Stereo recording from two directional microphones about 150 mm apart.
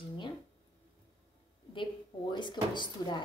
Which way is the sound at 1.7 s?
35° left (ahead or behind).